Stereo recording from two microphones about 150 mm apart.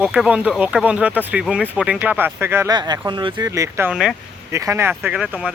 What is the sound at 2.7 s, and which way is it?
Speech, 25° right (ahead or behind).